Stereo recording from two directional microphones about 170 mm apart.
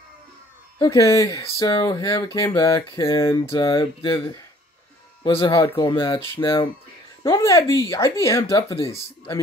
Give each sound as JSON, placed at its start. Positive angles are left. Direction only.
{"t": 0.7, "sound": "speech", "side_deg": 15}
{"t": 5.4, "sound": "speech", "side_deg": 25}